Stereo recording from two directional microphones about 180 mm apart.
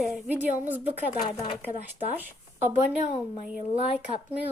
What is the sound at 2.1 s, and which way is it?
Speech, 10° right (ahead or behind).